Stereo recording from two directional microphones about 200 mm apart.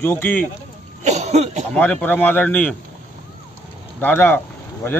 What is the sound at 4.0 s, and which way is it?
Speech, 10° left (ahead or behind).